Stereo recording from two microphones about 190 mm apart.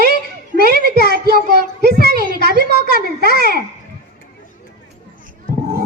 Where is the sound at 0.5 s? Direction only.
55° right (ahead or behind).